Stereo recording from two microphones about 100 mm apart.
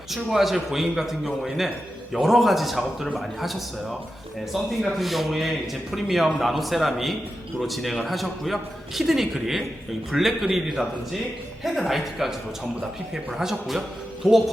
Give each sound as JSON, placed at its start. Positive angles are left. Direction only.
{"t": 0.3, "sound": "a man's voice", "side_deg": 0}
{"t": 13.4, "sound": "a man's voice", "side_deg": -5}